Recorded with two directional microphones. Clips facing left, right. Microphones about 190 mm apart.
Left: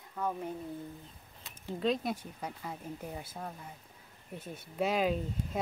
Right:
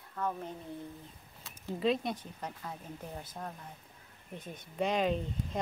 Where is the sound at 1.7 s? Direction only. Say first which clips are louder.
Right 1 dB; centre (ahead or behind).